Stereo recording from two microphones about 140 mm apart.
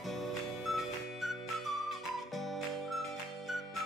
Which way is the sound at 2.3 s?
Centre (ahead or behind).